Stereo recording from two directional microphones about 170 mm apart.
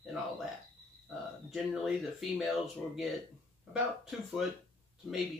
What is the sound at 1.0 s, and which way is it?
Speech, centre (ahead or behind).